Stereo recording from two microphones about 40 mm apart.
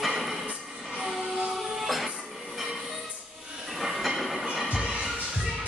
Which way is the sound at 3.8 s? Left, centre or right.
Centre.